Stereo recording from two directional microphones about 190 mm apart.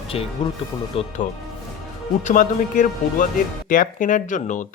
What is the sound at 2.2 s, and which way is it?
Speech, 40° left (ahead or behind).